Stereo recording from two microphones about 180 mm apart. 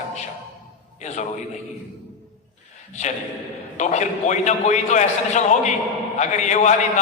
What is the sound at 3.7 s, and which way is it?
A man's voice, 40° left (ahead or behind).